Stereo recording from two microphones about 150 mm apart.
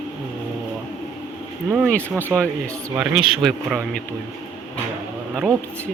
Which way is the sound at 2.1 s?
15° right (ahead or behind).